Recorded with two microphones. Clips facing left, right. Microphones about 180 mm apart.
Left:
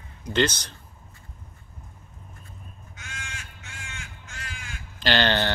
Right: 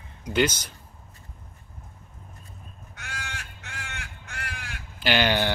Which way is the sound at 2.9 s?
65° right (ahead or behind).